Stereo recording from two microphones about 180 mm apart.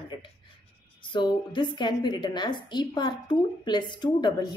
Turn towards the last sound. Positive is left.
turn(degrees=25)  # may be behind; listen again after turning